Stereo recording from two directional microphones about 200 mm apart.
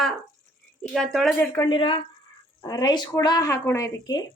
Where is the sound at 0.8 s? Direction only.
Centre (ahead or behind).